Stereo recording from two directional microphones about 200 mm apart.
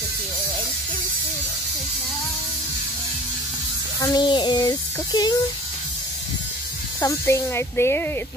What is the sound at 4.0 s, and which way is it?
Speech, 20° left (ahead or behind).